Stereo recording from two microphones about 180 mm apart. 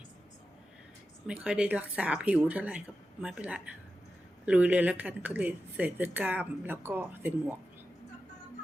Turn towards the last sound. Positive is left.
turn(degrees=-10)  # may be behind; listen again after turning